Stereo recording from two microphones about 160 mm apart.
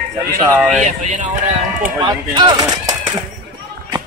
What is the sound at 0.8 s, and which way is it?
Speech, 50° right (ahead or behind).